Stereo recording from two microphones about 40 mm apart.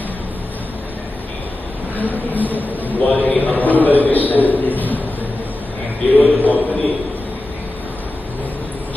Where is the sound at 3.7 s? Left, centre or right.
Right.